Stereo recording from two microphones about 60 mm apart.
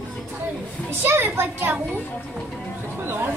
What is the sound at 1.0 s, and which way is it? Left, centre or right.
Speech, right.